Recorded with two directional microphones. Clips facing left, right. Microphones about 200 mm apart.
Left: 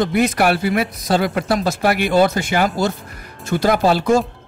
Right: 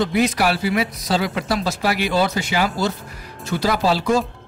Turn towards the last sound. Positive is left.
turn(degrees=50)  # may be behind; listen again after turning